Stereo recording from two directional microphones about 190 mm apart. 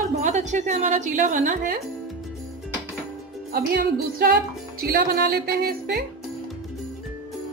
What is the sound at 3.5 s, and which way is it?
A woman's voice, 50° right (ahead or behind).